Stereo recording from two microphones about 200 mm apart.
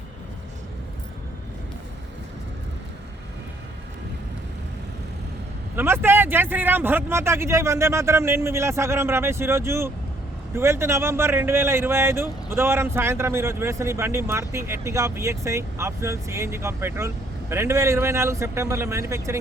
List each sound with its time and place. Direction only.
5.7 s speech: 10° right (ahead or behind)